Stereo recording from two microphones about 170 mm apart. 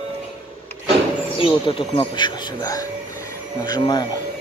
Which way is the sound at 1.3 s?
30° left (ahead or behind).